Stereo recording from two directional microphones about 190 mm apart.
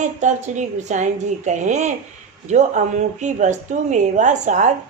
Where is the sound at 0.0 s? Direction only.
40° right (ahead or behind).